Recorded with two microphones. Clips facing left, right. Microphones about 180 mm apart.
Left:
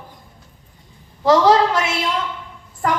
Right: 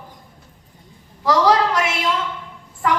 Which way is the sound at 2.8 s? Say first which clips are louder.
Even; 45° left (ahead or behind).